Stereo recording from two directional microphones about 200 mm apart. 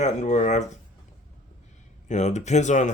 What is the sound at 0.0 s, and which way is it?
Speech, 35° left (ahead or behind).